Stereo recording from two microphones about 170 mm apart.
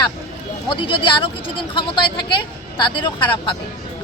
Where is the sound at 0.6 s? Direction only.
30° left (ahead or behind).